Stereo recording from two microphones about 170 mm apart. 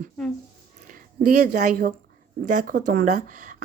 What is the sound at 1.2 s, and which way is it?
Speech, 50° right (ahead or behind).